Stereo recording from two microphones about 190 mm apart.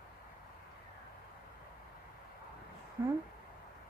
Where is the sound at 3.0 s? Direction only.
15° right (ahead or behind).